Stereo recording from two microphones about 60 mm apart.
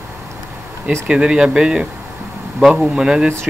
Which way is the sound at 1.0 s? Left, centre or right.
Centre.